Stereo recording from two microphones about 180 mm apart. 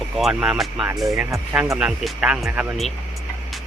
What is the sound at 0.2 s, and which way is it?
Speech, 5° right (ahead or behind).